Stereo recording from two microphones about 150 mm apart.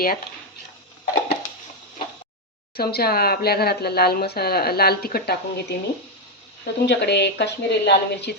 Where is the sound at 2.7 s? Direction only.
90° left.